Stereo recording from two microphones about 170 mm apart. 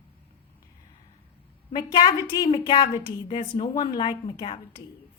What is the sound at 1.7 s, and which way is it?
A woman's voice, 25° left (ahead or behind).